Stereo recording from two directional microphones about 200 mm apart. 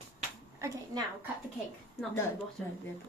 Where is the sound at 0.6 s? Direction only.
15° right (ahead or behind).